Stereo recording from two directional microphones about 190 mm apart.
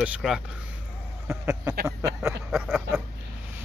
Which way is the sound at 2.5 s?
Centre (ahead or behind).